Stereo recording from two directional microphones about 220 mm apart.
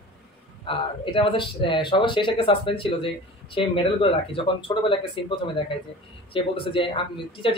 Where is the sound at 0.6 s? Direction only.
25° left (ahead or behind).